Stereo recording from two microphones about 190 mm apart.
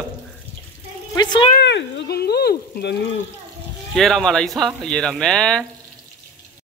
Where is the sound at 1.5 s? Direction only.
65° left (ahead or behind).